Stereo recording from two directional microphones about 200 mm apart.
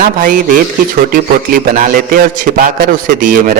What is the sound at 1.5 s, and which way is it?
Speech, 45° right (ahead or behind).